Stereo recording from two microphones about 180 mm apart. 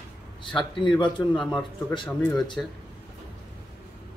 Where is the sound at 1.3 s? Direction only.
5° left (ahead or behind).